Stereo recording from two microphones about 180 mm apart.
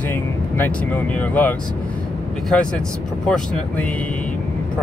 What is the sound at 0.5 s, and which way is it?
Speech, 10° left (ahead or behind).